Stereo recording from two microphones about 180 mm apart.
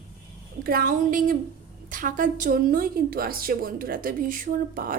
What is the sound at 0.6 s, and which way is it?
A woman's voice, 50° right (ahead or behind).